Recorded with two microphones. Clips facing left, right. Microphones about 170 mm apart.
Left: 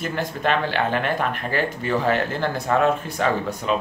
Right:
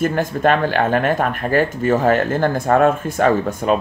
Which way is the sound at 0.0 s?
50° right (ahead or behind).